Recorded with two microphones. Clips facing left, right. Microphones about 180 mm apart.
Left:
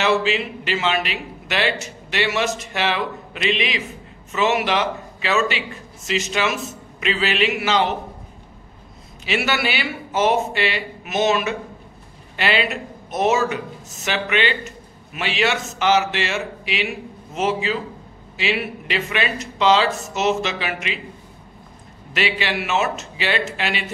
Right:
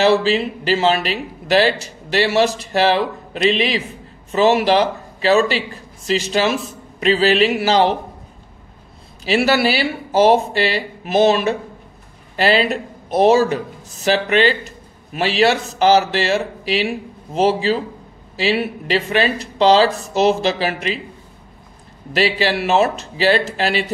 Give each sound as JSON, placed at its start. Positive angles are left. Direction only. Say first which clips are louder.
{"t": 0.0, "sound": "speech", "louder": "right 5 dB", "side_deg": -35}
{"t": 9.2, "sound": "speech", "louder": "right 7 dB", "side_deg": -35}
{"t": 22.1, "sound": "speech", "louder": "right 6 dB", "side_deg": -35}